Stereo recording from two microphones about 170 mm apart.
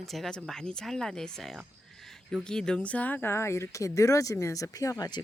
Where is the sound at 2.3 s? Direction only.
5° left (ahead or behind); by 5.1 s 20° left (ahead or behind).